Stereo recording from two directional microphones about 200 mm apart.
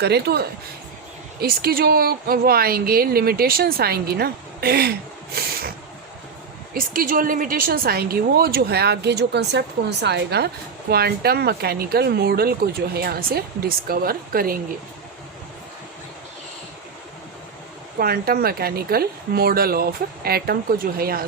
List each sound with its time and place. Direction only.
0.0 s a woman's voice: 55° right (ahead or behind)
6.7 s a woman's voice: 45° right (ahead or behind)
18.0 s a woman's voice: 50° right (ahead or behind)